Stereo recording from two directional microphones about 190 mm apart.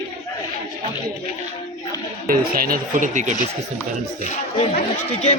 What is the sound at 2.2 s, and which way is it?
Speech, 50° right (ahead or behind).